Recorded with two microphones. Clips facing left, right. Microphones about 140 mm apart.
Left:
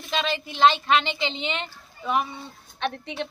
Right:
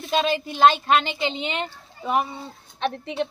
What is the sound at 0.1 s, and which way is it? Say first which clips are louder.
A woman's voice: right 5 dB; 45° right (ahead or behind).